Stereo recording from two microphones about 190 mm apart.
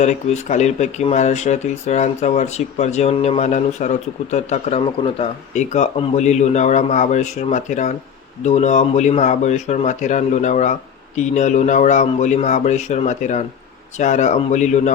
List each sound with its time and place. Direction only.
0.0 s speech: 35° left (ahead or behind)